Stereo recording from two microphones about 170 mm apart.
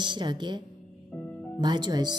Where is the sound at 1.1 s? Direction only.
10° left (ahead or behind).